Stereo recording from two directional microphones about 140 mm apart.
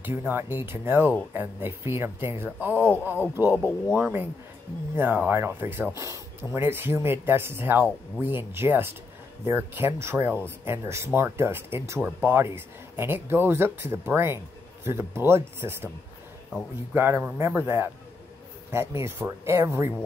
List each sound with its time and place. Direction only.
0.0 s speech: 15° right (ahead or behind)
3.5 s speech: 5° left (ahead or behind)
3.9 s speech: 15° right (ahead or behind)
16.9 s speech: 15° right (ahead or behind)